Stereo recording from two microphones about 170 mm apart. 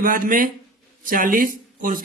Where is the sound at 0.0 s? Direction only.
55° right (ahead or behind).